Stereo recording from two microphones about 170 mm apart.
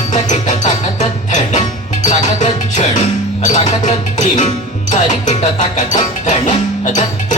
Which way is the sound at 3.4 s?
45° left (ahead or behind).